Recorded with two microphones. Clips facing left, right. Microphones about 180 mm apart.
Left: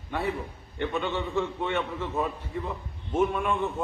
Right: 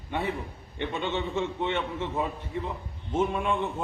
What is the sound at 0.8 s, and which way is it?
A man's voice, 25° right (ahead or behind).